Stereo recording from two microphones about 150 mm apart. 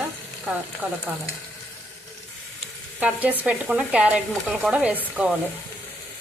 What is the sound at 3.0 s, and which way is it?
Stir, 10° right (ahead or behind).